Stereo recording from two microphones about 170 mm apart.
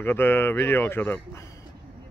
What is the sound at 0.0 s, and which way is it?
Speech, 10° left (ahead or behind).